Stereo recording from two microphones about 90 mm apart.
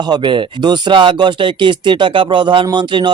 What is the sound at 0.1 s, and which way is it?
Speech, 65° right (ahead or behind).